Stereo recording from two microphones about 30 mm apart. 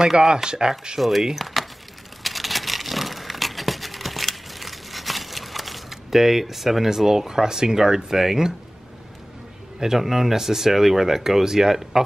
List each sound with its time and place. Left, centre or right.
0.0 s speech: right
0.9 s speech: centre
2.2 s a sound: centre
9.8 s a man's voice: centre
10.0 s speech: centre
10.3 s speech: centre